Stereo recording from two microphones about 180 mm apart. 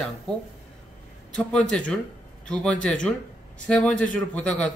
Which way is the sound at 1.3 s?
5° left (ahead or behind).